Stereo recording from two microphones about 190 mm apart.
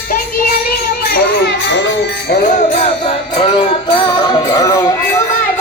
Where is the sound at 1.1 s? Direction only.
55° left (ahead or behind).